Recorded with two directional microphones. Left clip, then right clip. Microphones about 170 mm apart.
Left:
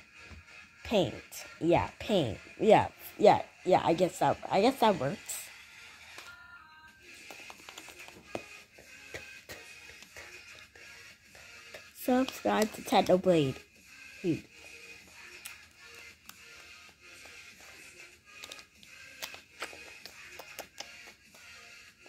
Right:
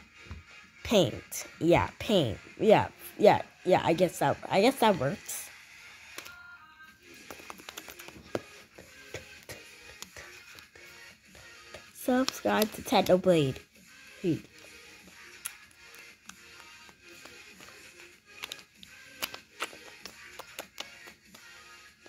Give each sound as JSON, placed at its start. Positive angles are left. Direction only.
{"t": 0.8, "sound": "speech", "side_deg": -20}
{"t": 7.2, "sound": "music", "side_deg": -15}
{"t": 8.3, "sound": "a sound", "side_deg": -15}
{"t": 11.7, "sound": "music", "side_deg": 5}
{"t": 12.4, "sound": "speech", "side_deg": 0}
{"t": 19.3, "sound": "music", "side_deg": -5}